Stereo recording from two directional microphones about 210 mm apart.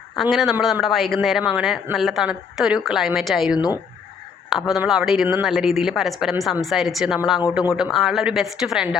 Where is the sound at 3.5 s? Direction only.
20° left (ahead or behind).